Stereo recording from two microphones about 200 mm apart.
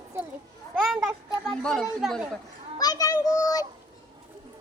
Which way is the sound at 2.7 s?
20° left (ahead or behind).